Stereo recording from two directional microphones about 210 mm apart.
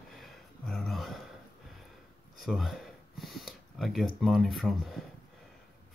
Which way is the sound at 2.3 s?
Centre (ahead or behind).